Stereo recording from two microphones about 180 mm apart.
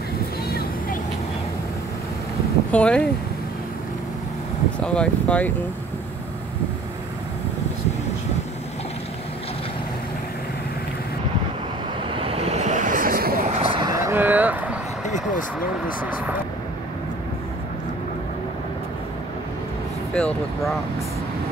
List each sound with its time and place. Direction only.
2.7 s speech: 5° left (ahead or behind)
4.8 s speech: 5° left (ahead or behind)
12.1 s vehicle: 30° right (ahead or behind); by 13.5 s 55° right (ahead or behind)
13.6 s vehicle: 30° right (ahead or behind); by 14.8 s 10° right (ahead or behind)
15.0 s a sound: 40° left (ahead or behind)
20.2 s speech: 5° left (ahead or behind)